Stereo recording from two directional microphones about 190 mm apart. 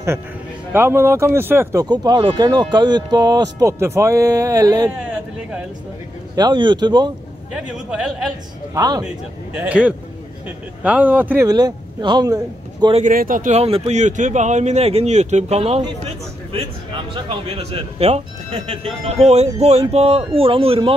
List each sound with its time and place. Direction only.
0.7 s speech: 15° right (ahead or behind)
4.9 s speech: 5° right (ahead or behind)
6.3 s speech: 25° right (ahead or behind)
7.5 s a man's voice: 5° right (ahead or behind)
8.7 s speech: 20° right (ahead or behind)
9.0 s speech: 5° right (ahead or behind)
11.4 s speech: 20° right (ahead or behind)
13.0 s speech: 45° right (ahead or behind); by 20.9 s 30° right (ahead or behind)